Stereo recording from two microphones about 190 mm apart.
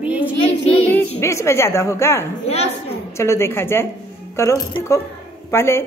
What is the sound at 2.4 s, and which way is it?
Speech, 35° left (ahead or behind).